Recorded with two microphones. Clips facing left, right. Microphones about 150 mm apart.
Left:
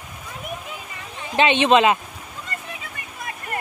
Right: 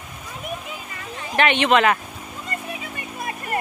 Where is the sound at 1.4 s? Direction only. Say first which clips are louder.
Left 2 dB; 20° left (ahead or behind).